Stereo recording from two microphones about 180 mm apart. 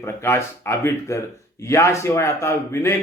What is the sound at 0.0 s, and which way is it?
Speech, 15° left (ahead or behind).